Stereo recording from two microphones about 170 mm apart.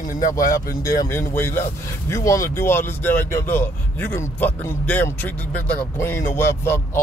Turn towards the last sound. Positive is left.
turn(degrees=15)  # may be behind; listen again after turning